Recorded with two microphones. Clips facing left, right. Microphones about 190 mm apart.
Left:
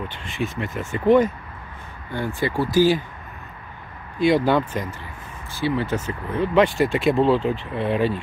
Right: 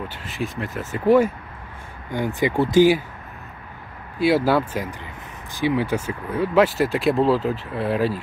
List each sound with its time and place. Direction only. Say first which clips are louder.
0.1 s speech: left 1 dB; 5° right (ahead or behind); by 2.9 s 20° right (ahead or behind)
4.2 s speech: even; 5° right (ahead or behind)